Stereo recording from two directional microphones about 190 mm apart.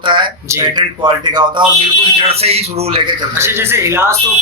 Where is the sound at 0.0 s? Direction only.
25° right (ahead or behind).